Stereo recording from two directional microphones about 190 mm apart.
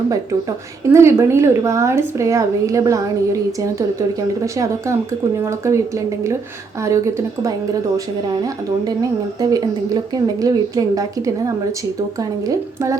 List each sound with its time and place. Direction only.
0.9 s a woman's voice: 15° right (ahead or behind)
4.5 s a woman's voice: 15° right (ahead or behind)
6.8 s a woman's voice: 15° right (ahead or behind)
8.9 s a woman's voice: 20° right (ahead or behind)